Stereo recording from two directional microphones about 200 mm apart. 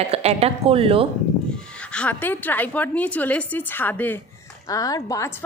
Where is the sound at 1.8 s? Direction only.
5° left (ahead or behind).